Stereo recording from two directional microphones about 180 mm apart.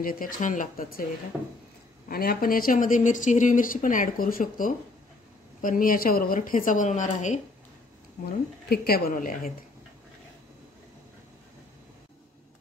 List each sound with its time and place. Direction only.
0.0 s speech: 50° left (ahead or behind)
2.0 s speech: 55° left (ahead or behind)
8.6 s a woman's voice: 60° left (ahead or behind)